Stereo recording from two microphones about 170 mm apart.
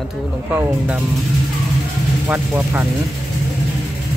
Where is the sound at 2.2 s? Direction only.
10° right (ahead or behind).